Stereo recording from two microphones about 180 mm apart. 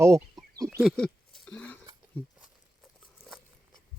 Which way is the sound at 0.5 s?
15° right (ahead or behind).